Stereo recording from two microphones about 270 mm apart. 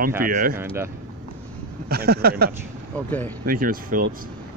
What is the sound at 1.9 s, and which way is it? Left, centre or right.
Speech, right.